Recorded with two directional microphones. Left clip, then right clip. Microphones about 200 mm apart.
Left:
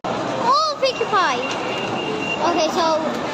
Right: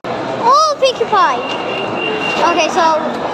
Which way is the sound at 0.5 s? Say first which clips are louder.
Right 8 dB; 20° right (ahead or behind).